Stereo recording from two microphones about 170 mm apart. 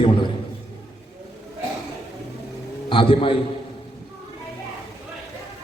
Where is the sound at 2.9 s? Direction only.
30° left (ahead or behind).